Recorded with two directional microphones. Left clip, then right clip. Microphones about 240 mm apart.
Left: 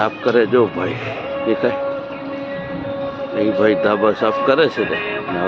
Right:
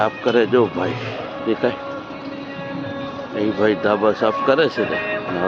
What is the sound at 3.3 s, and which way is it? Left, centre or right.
Speech, centre.